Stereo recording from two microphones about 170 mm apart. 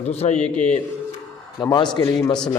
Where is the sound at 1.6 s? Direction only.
25° left (ahead or behind).